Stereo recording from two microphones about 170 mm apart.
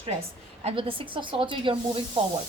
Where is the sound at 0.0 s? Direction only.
35° right (ahead or behind).